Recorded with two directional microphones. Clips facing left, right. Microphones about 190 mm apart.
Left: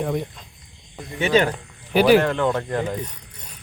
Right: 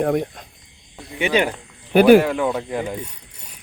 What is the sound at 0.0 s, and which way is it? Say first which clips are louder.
Speech: right 5 dB; 55° right (ahead or behind).